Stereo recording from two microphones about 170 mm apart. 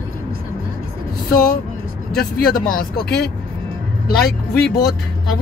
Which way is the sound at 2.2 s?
60° left (ahead or behind).